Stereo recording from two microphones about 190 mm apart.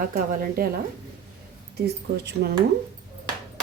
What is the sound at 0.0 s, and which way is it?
Speech, 50° right (ahead or behind).